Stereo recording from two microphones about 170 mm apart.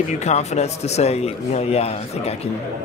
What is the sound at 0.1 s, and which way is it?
Speech, 40° left (ahead or behind).